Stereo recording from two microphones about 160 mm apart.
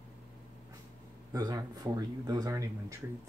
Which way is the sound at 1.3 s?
25° right (ahead or behind).